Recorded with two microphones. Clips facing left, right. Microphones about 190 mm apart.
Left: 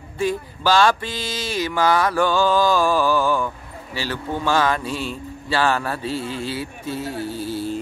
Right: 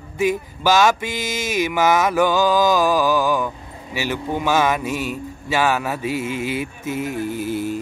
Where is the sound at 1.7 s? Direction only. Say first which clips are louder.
Right 1 dB; 20° right (ahead or behind).